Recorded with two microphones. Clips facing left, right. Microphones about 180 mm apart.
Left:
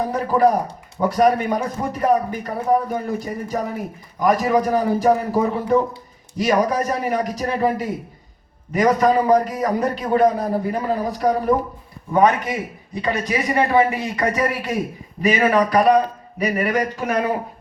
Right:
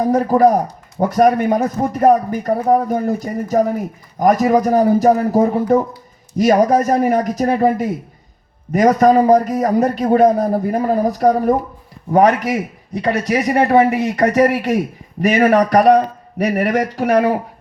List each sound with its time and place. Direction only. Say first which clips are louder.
0.1 s a man's voice: right 5 dB; 45° right (ahead or behind)
12.1 s a man's voice: right 4 dB; 80° right